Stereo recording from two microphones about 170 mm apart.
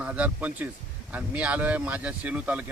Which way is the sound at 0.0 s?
10° right (ahead or behind).